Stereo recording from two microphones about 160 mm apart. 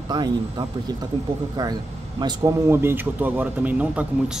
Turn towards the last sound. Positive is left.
turn(degrees=-10)  # may be behind; listen again after turning